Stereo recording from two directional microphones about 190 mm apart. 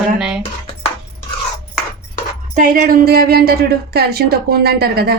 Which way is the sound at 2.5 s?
45° right (ahead or behind).